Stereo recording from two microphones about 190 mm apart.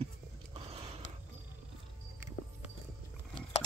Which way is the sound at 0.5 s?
30° right (ahead or behind).